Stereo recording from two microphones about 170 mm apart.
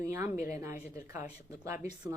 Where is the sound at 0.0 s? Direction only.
15° right (ahead or behind).